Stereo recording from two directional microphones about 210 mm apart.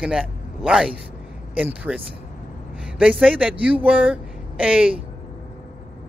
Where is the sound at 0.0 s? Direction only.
5° right (ahead or behind).